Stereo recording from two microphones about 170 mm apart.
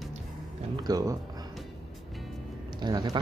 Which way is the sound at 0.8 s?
20° right (ahead or behind).